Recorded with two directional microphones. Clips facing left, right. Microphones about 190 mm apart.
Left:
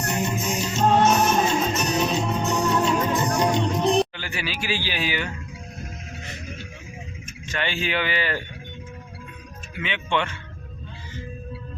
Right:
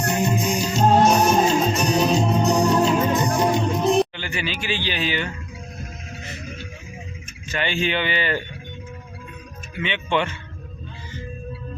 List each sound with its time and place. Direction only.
0.1 s music: 35° right (ahead or behind)
3.3 s music: 10° right (ahead or behind); by 5.3 s 10° left (ahead or behind)
7.4 s speech: 5° right (ahead or behind)
9.8 s speech: centre (ahead or behind)